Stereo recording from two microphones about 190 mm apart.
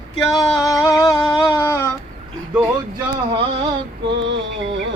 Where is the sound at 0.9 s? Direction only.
15° left (ahead or behind).